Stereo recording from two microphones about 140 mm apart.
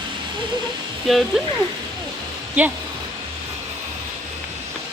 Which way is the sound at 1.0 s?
Centre (ahead or behind).